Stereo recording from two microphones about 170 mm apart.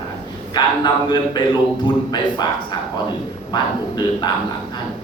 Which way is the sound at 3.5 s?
25° left (ahead or behind).